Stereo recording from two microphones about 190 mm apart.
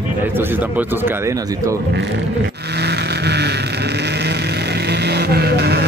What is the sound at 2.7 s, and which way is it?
Vehicle, 60° right (ahead or behind).